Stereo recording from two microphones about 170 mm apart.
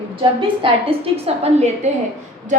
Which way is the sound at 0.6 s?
35° right (ahead or behind).